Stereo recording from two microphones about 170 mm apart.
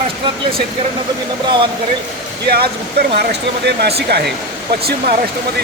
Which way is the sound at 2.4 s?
65° right (ahead or behind).